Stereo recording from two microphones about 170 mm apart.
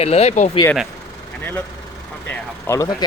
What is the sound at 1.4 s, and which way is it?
Speech, 10° left (ahead or behind).